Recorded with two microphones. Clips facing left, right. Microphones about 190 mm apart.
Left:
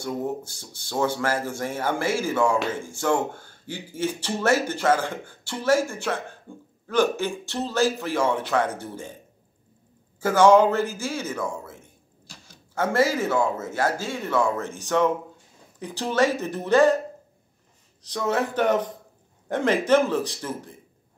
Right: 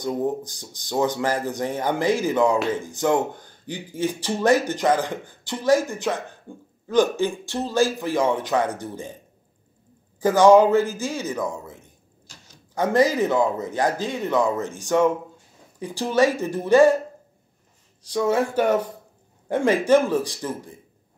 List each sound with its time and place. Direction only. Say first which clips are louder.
0.0 s speech: right 4 dB; 15° right (ahead or behind)
10.2 s speech: right 2 dB; 15° right (ahead or behind)
18.0 s speech: right 4 dB; 10° right (ahead or behind)